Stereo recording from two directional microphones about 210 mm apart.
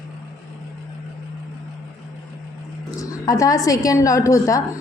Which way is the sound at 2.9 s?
15° left (ahead or behind).